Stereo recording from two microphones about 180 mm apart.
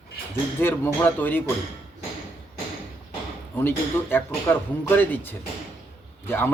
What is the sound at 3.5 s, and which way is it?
Speech, 10° left (ahead or behind).